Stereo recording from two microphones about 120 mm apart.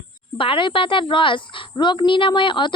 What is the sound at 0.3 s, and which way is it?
A child's voice, 45° left (ahead or behind).